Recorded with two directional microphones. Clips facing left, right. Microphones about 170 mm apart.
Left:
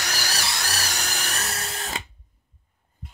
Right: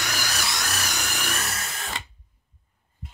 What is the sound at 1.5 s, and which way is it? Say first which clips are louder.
Drill: left 2 dB; 40° left (ahead or behind).